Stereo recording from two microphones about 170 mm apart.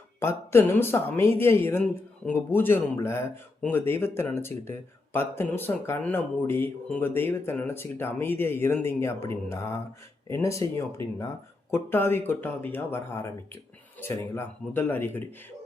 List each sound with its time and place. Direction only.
0.2 s speech: 15° left (ahead or behind)
14.0 s speech: 10° left (ahead or behind)